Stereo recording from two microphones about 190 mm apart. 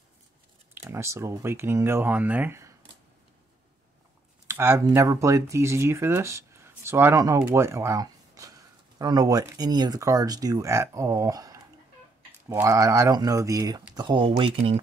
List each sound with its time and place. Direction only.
0.7 s speech: 15° right (ahead or behind)
4.5 s speech: 10° right (ahead or behind); by 14.8 s 30° right (ahead or behind)